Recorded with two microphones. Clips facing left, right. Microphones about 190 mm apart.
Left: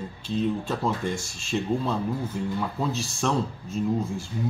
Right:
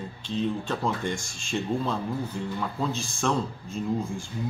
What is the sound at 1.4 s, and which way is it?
Speech, 5° left (ahead or behind).